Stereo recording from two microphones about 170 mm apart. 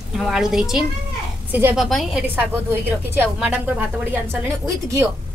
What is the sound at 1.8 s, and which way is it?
A woman's voice, centre (ahead or behind).